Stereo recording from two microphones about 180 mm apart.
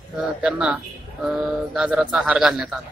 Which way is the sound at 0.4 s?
5° right (ahead or behind).